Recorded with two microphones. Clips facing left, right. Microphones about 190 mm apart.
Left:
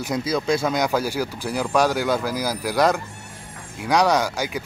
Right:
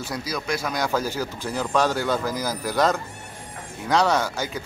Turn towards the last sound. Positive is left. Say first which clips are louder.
# left 2 dB
turn(degrees=15)  # may be behind; listen again after turning